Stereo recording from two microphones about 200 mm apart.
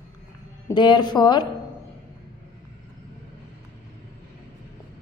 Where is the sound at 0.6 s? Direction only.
20° left (ahead or behind).